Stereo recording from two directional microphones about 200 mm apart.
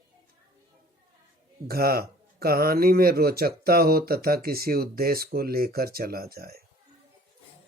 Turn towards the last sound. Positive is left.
turn(degrees=-50)  # may be behind; listen again after turning